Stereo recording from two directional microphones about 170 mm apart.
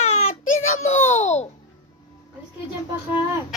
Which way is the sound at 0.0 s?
40° left (ahead or behind).